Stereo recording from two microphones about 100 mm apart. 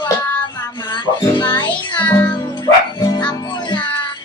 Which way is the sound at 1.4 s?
45° left (ahead or behind).